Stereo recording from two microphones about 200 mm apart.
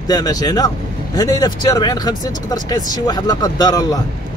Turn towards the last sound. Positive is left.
turn(degrees=20)  # may be behind; listen again after turning